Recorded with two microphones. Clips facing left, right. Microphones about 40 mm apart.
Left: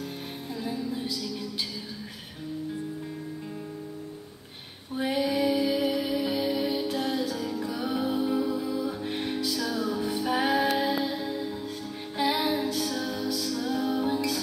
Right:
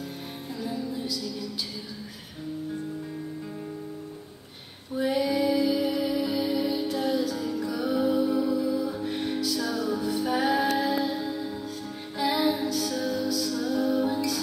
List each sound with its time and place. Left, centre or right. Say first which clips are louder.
4.9 s music: right 2 dB; left
11.1 s music: right 1 dB; centre
12.2 s music: right 1 dB; left